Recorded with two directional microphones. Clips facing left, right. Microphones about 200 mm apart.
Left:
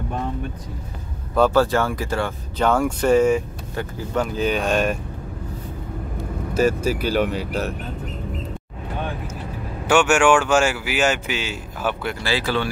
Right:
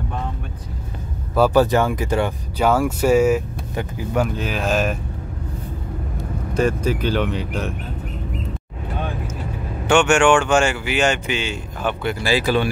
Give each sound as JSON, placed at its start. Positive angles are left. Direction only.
{"t": 1.3, "sound": "speech", "side_deg": -10}
{"t": 2.7, "sound": "speech", "side_deg": -5}
{"t": 6.5, "sound": "speech", "side_deg": 5}
{"t": 9.8, "sound": "speech", "side_deg": 5}
{"t": 12.2, "sound": "speech", "side_deg": -15}